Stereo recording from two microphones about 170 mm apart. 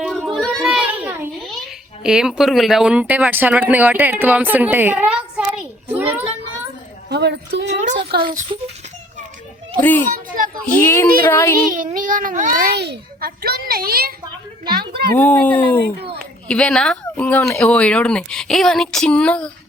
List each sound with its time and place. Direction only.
0.1 s a sound: 5° left (ahead or behind)
1.4 s a sound: centre (ahead or behind)
2.0 s speech: 5° right (ahead or behind)
6.0 s a sound: 10° right (ahead or behind)
7.1 s a woman's voice: 80° right
8.1 s speech: 70° right (ahead or behind)
8.5 s speech: 30° right (ahead or behind)
9.8 s speech: 10° left (ahead or behind)
11.7 s a child's voice: 50° right (ahead or behind)
15.1 s speech: 10° left (ahead or behind)